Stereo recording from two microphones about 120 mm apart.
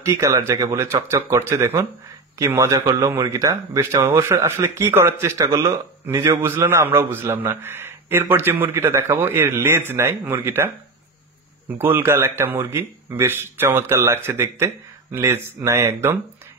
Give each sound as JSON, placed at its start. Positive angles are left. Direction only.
{"t": 0.0, "sound": "a man's voice", "side_deg": -25}
{"t": 11.8, "sound": "a man's voice", "side_deg": -20}